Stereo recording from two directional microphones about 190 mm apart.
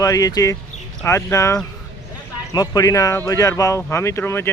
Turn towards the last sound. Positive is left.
turn(degrees=15)  # may be behind; listen again after turning